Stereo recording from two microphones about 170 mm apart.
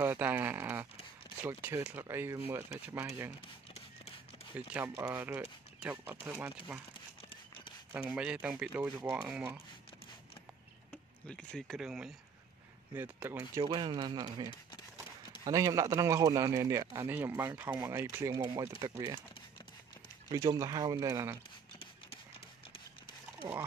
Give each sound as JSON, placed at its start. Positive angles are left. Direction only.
{"t": 0.0, "sound": "a man's voice", "side_deg": -10}
{"t": 3.3, "sound": "a sound", "side_deg": 40}
{"t": 4.6, "sound": "a man's voice", "side_deg": -10}
{"t": 6.9, "sound": "a sound", "side_deg": 30}
{"t": 7.9, "sound": "a man's voice", "side_deg": -10}
{"t": 11.2, "sound": "a man's voice", "side_deg": 5}
{"t": 13.6, "sound": "a man's voice", "side_deg": -25}
{"t": 20.3, "sound": "speech", "side_deg": -20}